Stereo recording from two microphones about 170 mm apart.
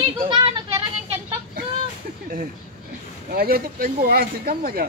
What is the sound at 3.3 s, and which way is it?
Speech, 60° right (ahead or behind).